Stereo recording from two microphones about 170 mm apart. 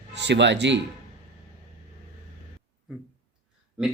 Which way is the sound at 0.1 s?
90° right.